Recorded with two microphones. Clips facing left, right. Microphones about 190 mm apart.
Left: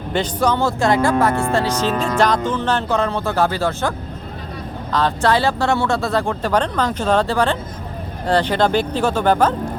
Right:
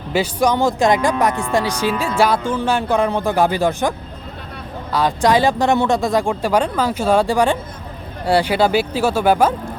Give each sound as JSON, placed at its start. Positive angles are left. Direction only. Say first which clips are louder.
{"t": 0.1, "sound": "speech", "louder": "right 2 dB", "side_deg": -10}